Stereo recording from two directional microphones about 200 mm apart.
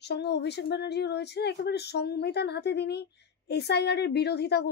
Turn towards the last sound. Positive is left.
turn(degrees=55)  # may be behind; listen again after turning